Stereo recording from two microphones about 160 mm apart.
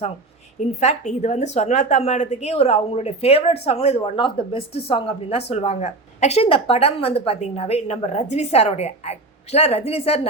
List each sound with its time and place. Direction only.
0.8 s speech: 45° left (ahead or behind)